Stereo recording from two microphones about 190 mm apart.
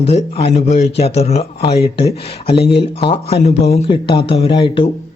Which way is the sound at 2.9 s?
30° left (ahead or behind).